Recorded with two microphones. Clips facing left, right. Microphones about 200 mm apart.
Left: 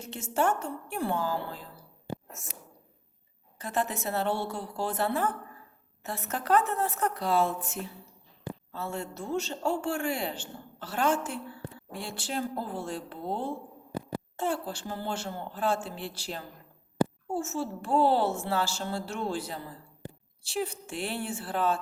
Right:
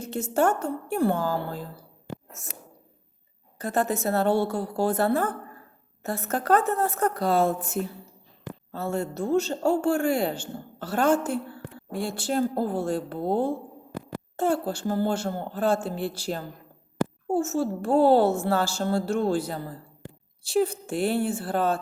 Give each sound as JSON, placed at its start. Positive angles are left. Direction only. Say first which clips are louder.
{"t": 0.1, "sound": "a woman's voice", "louder": "right 5 dB", "side_deg": -45}
{"t": 3.6, "sound": "a woman's voice", "louder": "right 6 dB", "side_deg": -45}